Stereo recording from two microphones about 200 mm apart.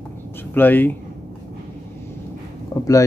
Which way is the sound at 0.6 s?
10° left (ahead or behind).